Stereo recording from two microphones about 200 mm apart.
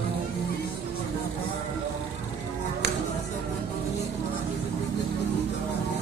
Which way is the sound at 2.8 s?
55° right (ahead or behind).